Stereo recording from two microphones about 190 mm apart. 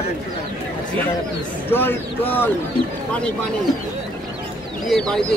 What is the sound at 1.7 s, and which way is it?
Speech, 10° left (ahead or behind).